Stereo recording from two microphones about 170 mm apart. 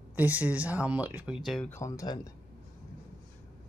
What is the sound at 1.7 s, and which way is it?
Speech, 20° left (ahead or behind).